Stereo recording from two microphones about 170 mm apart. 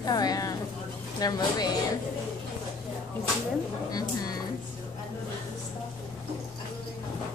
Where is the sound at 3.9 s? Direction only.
20° left (ahead or behind).